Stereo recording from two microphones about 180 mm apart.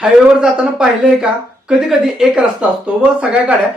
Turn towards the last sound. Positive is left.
turn(degrees=-5)  # may be behind; listen again after turning